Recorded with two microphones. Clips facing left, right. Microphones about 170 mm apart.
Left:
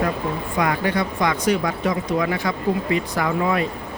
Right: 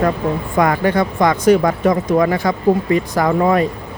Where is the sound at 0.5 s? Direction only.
50° right (ahead or behind).